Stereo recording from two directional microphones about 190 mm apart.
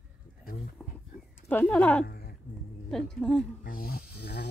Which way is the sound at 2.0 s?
55° left (ahead or behind).